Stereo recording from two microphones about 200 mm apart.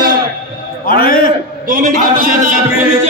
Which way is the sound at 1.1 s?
45° left (ahead or behind).